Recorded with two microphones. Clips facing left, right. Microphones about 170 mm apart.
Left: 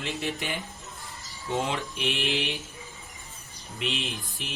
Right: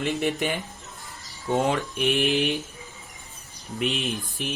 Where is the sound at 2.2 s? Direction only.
45° right (ahead or behind).